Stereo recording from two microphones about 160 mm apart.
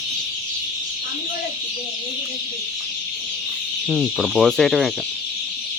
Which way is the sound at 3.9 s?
5° left (ahead or behind).